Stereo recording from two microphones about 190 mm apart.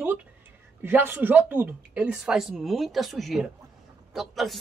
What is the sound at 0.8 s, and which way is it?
A woman's voice, 10° right (ahead or behind).